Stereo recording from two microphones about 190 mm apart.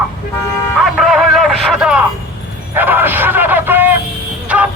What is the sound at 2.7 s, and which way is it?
Music, 10° right (ahead or behind).